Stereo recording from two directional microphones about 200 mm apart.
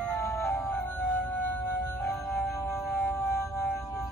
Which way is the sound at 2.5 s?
15° left (ahead or behind).